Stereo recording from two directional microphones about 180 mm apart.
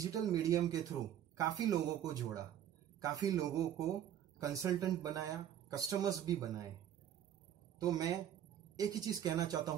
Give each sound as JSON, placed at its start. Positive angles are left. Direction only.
{"t": 0.0, "sound": "speech", "side_deg": -20}
{"t": 7.8, "sound": "speech", "side_deg": -20}